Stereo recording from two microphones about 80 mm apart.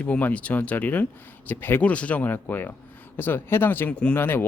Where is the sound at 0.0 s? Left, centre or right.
Left.